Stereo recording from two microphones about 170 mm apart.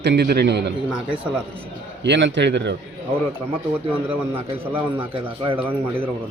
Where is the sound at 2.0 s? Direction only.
90° right.